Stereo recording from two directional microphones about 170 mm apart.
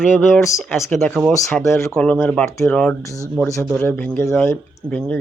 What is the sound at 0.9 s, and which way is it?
Speech, centre (ahead or behind).